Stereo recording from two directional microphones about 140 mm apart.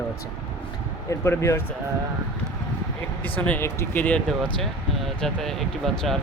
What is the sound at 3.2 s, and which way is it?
Speech, 10° left (ahead or behind).